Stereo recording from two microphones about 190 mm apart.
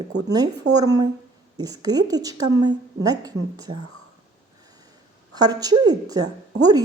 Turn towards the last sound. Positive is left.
turn(degrees=-20)  # may be behind; listen again after turning